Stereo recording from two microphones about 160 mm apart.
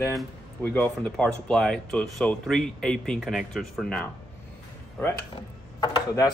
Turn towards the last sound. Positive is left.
turn(degrees=25)  # may be behind; listen again after turning